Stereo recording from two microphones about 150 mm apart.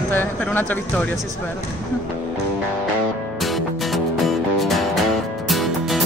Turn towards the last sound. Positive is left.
turn(degrees=0)  # may be behind; listen again after turning